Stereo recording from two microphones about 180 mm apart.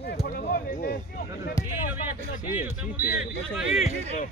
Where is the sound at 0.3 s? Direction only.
50° left (ahead or behind).